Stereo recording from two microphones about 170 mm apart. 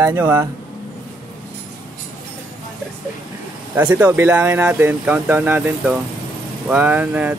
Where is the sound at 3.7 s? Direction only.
10° right (ahead or behind).